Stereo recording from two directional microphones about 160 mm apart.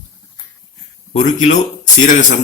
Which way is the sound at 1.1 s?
50° left (ahead or behind).